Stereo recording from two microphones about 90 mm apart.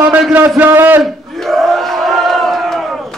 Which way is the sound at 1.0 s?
Centre (ahead or behind).